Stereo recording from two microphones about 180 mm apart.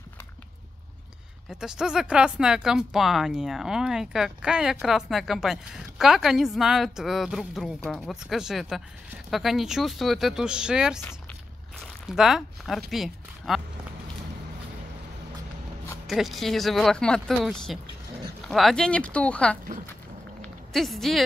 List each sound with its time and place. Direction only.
1.5 s speech: 5° right (ahead or behind)
16.1 s speech: centre (ahead or behind)
20.4 s a sound: centre (ahead or behind)